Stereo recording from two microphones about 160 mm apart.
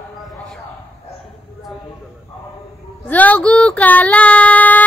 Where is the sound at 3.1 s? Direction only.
10° left (ahead or behind).